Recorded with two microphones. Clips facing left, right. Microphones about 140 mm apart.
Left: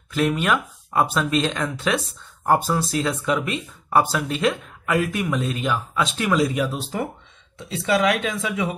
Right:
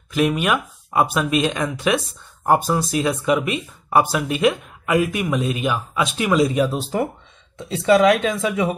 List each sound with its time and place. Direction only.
0.1 s speech: 15° right (ahead or behind)
6.6 s speech: 40° right (ahead or behind)